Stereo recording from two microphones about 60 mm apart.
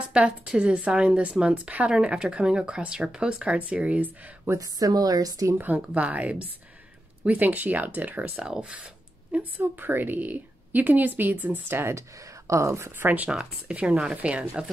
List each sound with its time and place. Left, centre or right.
0.1 s speech: centre
4.6 s a woman's voice: right
5.6 s speech: right
9.6 s speech: right
11.7 s speech: right
12.4 s speech: right
12.9 s speech: right
13.3 s speech: centre